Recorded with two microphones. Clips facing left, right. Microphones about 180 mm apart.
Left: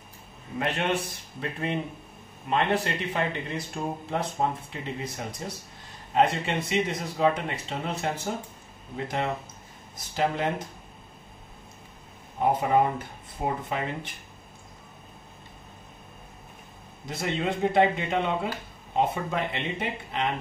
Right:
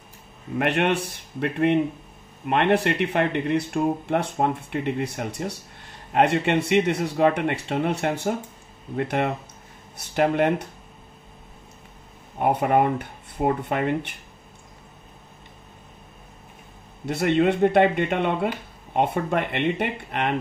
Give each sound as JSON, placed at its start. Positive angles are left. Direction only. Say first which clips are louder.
{"t": 0.6, "sound": "speech", "louder": "right 5 dB", "side_deg": -65}
{"t": 12.4, "sound": "speech", "louder": "right 3 dB", "side_deg": -65}
{"t": 17.0, "sound": "speech", "louder": "right 9 dB", "side_deg": -65}